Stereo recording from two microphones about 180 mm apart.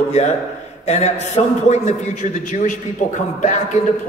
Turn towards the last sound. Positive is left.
turn(degrees=45)  # may be behind; listen again after turning